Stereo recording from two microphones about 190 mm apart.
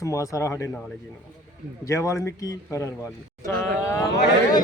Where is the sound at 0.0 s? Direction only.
15° left (ahead or behind).